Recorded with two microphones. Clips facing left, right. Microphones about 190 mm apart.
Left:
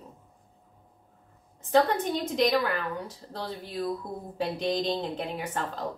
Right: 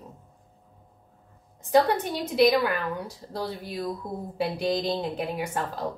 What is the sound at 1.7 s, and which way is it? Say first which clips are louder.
Speech: right 2 dB; 10° right (ahead or behind).